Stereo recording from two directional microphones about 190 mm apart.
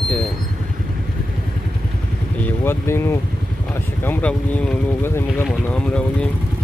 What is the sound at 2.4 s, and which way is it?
Speech, 10° left (ahead or behind).